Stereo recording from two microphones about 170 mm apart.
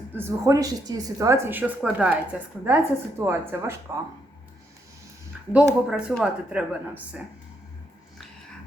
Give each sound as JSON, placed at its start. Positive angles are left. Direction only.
{"t": 0.2, "sound": "speech", "side_deg": -15}
{"t": 5.5, "sound": "speech", "side_deg": -5}